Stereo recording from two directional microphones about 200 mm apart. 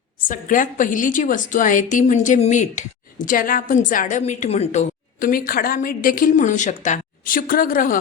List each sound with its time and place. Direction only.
0.3 s a woman's voice: 40° left (ahead or behind)